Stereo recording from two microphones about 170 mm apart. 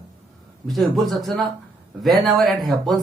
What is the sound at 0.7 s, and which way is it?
Speech, centre (ahead or behind).